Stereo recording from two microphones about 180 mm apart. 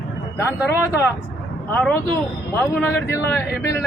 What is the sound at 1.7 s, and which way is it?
A man's voice, 10° left (ahead or behind).